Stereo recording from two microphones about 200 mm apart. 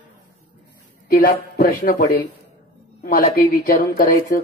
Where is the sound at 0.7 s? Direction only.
45° left (ahead or behind).